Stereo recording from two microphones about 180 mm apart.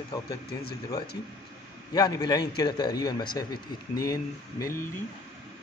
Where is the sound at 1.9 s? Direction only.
20° left (ahead or behind).